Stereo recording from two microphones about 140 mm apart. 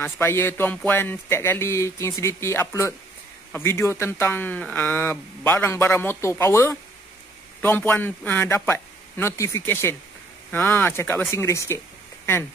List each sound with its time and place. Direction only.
0.0 s speech: 15° left (ahead or behind)